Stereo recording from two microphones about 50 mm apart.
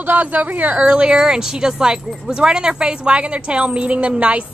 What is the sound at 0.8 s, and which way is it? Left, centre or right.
Speech, centre.